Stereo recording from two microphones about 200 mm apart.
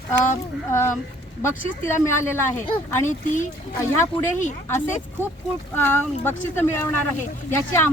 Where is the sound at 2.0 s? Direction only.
10° left (ahead or behind).